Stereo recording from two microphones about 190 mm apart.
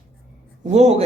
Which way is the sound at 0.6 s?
35° right (ahead or behind).